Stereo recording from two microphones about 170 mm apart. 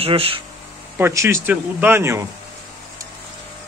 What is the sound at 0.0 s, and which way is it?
Speech, 35° right (ahead or behind).